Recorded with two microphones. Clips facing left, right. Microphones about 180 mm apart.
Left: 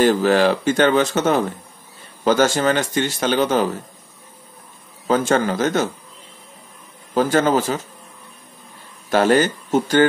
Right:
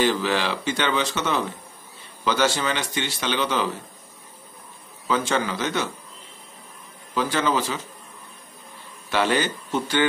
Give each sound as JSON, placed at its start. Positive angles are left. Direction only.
{"t": 0.0, "sound": "a man's voice", "side_deg": 45}
{"t": 5.0, "sound": "a man's voice", "side_deg": 45}
{"t": 7.2, "sound": "a man's voice", "side_deg": 45}
{"t": 9.1, "sound": "a man's voice", "side_deg": 45}